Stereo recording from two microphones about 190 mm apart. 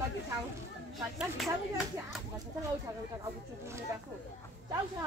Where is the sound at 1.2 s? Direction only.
Centre (ahead or behind).